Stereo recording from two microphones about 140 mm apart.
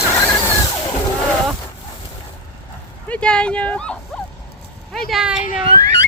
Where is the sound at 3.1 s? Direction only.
5° left (ahead or behind).